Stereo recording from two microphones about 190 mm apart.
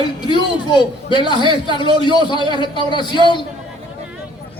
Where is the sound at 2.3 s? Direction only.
25° left (ahead or behind).